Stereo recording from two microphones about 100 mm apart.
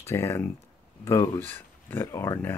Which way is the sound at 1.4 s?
20° left (ahead or behind).